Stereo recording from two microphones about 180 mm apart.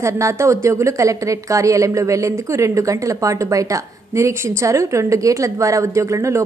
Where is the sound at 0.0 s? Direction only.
15° right (ahead or behind).